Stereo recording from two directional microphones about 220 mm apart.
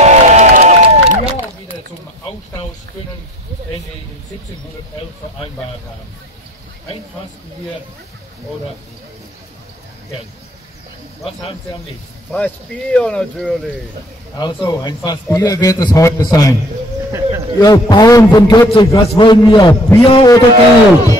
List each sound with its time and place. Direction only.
0.0 s music: 30° right (ahead or behind)
12.3 s speech: 5° left (ahead or behind)
14.4 s a man's voice: 20° left (ahead or behind)
17.1 s speech: 15° right (ahead or behind)
17.6 s a man's voice: 15° left (ahead or behind)
19.7 s a man's voice: 10° left (ahead or behind)
20.1 s a man's voice: 20° left (ahead or behind)